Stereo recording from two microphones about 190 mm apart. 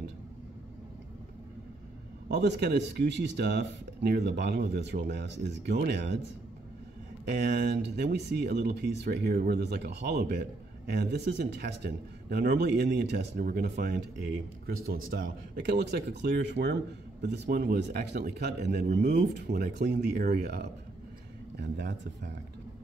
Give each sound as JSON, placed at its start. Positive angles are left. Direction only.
{"t": 2.2, "sound": "speech", "side_deg": -60}
{"t": 7.2, "sound": "speech", "side_deg": -60}
{"t": 15.0, "sound": "speech", "side_deg": -50}
{"t": 19.4, "sound": "speech", "side_deg": -50}
{"t": 21.5, "sound": "speech", "side_deg": -65}